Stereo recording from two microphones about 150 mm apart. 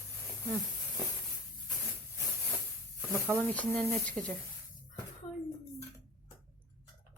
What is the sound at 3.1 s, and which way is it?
Speech, 15° right (ahead or behind).